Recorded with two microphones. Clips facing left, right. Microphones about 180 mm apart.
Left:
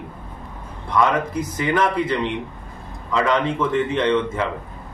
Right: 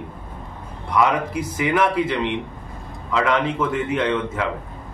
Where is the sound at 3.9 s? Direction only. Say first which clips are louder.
Left 2 dB; 5° right (ahead or behind).